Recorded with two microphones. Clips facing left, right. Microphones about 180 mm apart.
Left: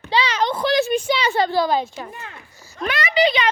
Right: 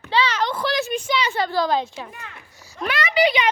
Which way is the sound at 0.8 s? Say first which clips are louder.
Left 4 dB; 30° left (ahead or behind).